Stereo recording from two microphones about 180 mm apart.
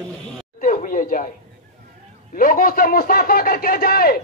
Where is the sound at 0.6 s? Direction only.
45° left (ahead or behind).